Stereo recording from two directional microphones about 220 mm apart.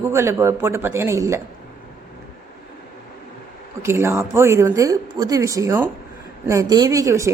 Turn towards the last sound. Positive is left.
turn(degrees=-15)  # may be behind; listen again after turning